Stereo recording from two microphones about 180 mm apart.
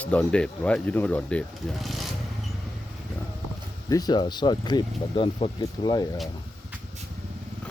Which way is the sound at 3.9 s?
20° left (ahead or behind).